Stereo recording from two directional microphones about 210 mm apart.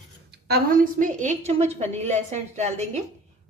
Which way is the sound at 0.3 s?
45° right (ahead or behind).